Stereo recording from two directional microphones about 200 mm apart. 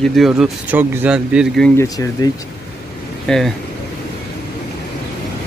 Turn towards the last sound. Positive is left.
turn(degrees=0)  # may be behind; listen again after turning